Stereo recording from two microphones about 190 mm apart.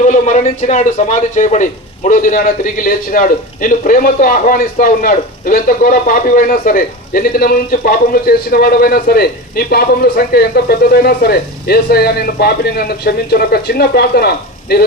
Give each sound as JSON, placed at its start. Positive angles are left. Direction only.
{"t": 0.0, "sound": "a man's voice", "side_deg": 40}